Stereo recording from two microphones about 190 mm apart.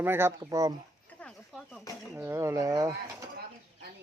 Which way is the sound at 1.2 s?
Centre (ahead or behind).